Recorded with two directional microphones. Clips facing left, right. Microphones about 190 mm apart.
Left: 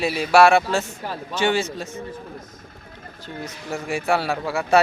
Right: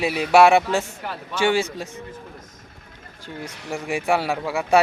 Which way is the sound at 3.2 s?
10° right (ahead or behind).